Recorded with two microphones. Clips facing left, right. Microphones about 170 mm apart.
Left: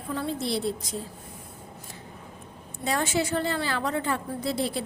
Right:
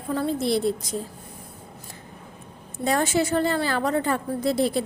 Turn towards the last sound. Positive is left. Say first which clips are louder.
# right 6 dB
turn(degrees=-45)  # may be behind; listen again after turning